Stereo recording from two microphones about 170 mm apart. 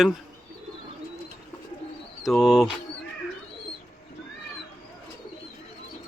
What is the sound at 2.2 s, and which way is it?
Speech, centre (ahead or behind).